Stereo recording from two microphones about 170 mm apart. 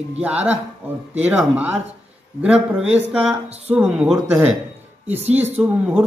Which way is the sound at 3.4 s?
40° right (ahead or behind).